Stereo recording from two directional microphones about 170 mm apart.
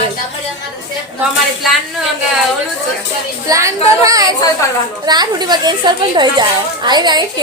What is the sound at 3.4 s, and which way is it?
A woman's voice, 20° right (ahead or behind).